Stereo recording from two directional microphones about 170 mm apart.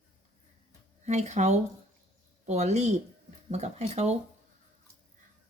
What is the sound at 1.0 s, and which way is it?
Speech, 40° right (ahead or behind).